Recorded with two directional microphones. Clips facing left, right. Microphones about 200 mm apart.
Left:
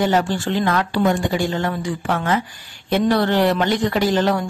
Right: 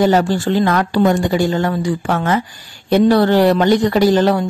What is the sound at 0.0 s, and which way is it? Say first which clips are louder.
Speech: right 5 dB; 40° right (ahead or behind).